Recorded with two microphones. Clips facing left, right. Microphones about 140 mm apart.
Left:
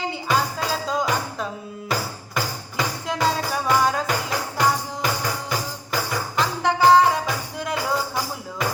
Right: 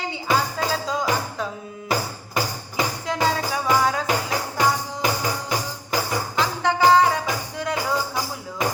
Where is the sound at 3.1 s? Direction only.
Centre (ahead or behind).